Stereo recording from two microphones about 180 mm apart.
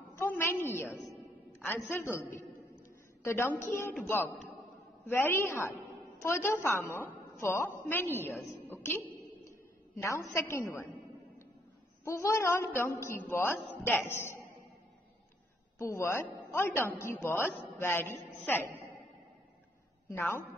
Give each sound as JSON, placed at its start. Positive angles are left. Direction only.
{"t": 0.2, "sound": "a sound", "side_deg": 15}
{"t": 0.7, "sound": "a woman's voice", "side_deg": 10}
{"t": 3.3, "sound": "a woman's voice", "side_deg": 15}
{"t": 8.6, "sound": "music", "side_deg": 10}
{"t": 10.0, "sound": "a woman's voice", "side_deg": 15}
{"t": 12.0, "sound": "a woman's voice", "side_deg": 15}
{"t": 15.8, "sound": "a woman's voice", "side_deg": 15}